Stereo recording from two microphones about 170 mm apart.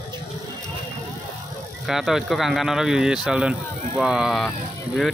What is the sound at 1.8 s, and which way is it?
Speech, centre (ahead or behind).